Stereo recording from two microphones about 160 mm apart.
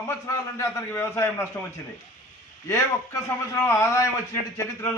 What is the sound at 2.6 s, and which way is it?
A man's voice, 15° left (ahead or behind).